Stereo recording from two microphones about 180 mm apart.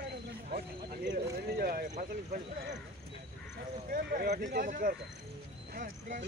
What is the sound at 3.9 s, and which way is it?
Speech, 55° right (ahead or behind).